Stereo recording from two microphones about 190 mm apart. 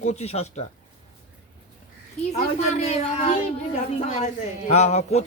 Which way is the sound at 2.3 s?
35° left (ahead or behind).